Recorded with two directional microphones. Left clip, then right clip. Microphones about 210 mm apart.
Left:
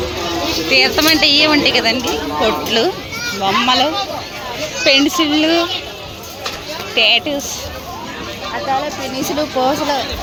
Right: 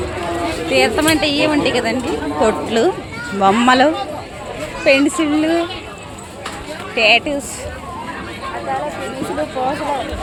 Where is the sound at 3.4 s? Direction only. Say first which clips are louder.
Right 2 dB; 30° right (ahead or behind).